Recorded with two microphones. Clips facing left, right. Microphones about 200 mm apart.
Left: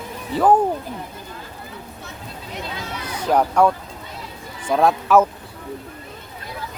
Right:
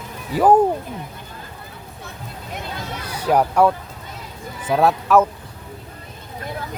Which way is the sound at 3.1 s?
10° right (ahead or behind).